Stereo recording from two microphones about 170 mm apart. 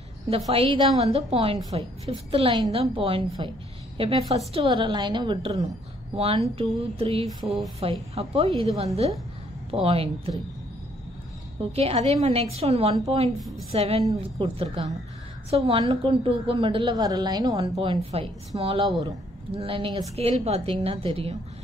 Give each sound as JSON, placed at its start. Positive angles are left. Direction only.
{"t": 0.5, "sound": "a woman's voice", "side_deg": -35}
{"t": 11.7, "sound": "a woman's voice", "side_deg": -35}
{"t": 13.4, "sound": "a woman's voice", "side_deg": 0}
{"t": 13.7, "sound": "a woman's voice", "side_deg": -35}